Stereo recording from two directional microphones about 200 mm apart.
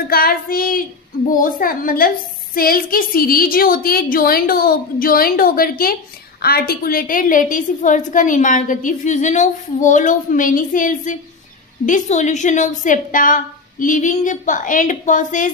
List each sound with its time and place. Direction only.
0.1 s a woman's voice: 50° left (ahead or behind)